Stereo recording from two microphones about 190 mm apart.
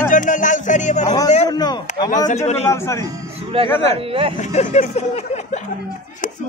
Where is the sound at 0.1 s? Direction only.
45° left (ahead or behind).